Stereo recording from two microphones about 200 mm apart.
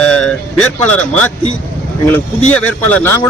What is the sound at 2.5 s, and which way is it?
Speech, 10° left (ahead or behind).